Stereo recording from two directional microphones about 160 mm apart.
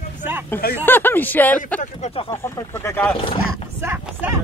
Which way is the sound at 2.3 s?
15° left (ahead or behind).